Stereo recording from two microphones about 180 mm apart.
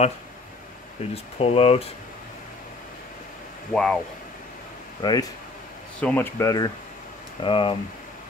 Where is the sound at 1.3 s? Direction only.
35° left (ahead or behind).